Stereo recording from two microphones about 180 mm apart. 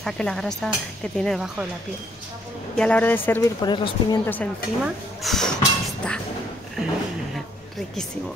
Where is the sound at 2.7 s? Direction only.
5° left (ahead or behind).